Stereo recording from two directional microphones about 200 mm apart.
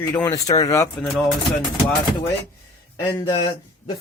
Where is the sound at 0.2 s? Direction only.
20° left (ahead or behind).